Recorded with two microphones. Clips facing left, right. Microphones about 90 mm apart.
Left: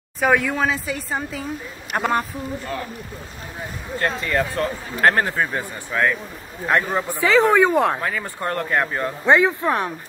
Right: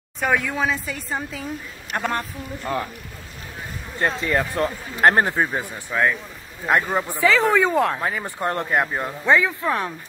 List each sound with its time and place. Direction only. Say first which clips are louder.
0.2 s a woman's voice: left 3 dB; centre (ahead or behind)
4.3 s speech: even; 10° right (ahead or behind)
4.6 s a man's voice: even; 25° right (ahead or behind)
5.5 s a woman's voice: even; 10° right (ahead or behind)
7.2 s speech: left 3 dB; 20° left (ahead or behind)
8.0 s a man's voice: right 1 dB; 20° right (ahead or behind)
9.2 s speech: left 3 dB; 20° left (ahead or behind)